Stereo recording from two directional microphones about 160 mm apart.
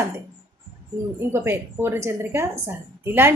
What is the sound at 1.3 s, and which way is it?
A woman's voice, 15° right (ahead or behind).